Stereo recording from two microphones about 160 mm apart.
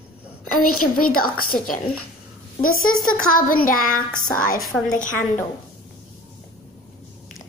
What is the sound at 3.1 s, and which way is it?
Speech, 60° left (ahead or behind).